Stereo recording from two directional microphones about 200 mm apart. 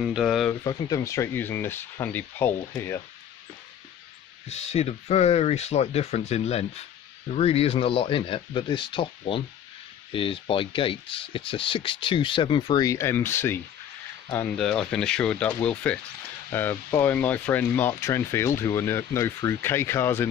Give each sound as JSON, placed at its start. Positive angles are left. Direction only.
{"t": 0.0, "sound": "speech", "side_deg": 0}
{"t": 0.5, "sound": "speech", "side_deg": 20}
{"t": 4.5, "sound": "speech", "side_deg": 30}